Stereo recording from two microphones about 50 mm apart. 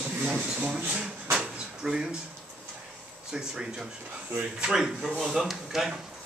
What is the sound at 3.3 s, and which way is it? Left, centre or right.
Speech, centre.